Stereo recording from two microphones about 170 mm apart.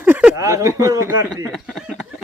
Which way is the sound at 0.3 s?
20° right (ahead or behind).